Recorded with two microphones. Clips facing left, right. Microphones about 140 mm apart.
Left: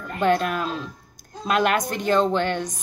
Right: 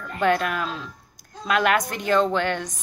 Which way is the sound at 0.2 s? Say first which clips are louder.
Left 1 dB; 30° left (ahead or behind).